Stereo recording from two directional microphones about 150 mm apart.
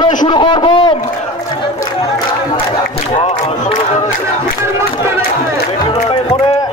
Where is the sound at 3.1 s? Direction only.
40° left (ahead or behind).